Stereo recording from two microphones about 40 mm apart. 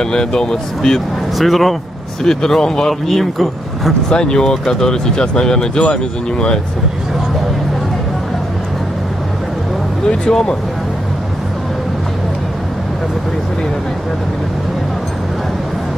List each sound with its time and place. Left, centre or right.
0.0 s speech: centre
1.4 s speech: centre
2.2 s speech: centre
4.1 s speech: centre
10.0 s speech: left